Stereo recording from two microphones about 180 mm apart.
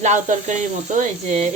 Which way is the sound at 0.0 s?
40° right (ahead or behind).